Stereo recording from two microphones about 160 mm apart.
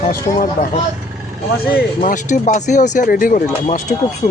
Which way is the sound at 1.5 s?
70° left (ahead or behind).